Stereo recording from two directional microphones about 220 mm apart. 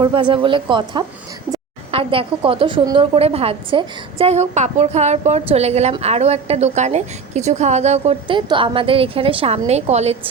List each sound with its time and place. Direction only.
0.0 s a woman's voice: 25° right (ahead or behind)